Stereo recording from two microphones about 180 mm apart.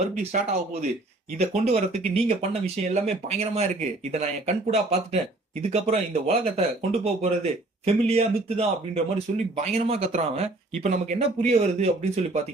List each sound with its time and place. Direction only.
0.2 s speech: 35° right (ahead or behind)